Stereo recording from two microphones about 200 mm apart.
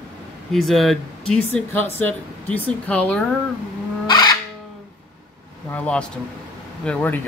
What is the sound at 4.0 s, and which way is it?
Music, 20° left (ahead or behind).